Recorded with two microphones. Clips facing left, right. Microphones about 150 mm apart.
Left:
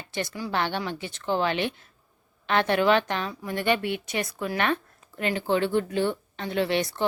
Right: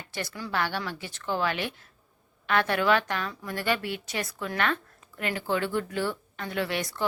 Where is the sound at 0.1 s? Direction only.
20° left (ahead or behind).